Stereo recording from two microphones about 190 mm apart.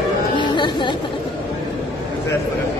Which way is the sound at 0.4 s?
25° left (ahead or behind).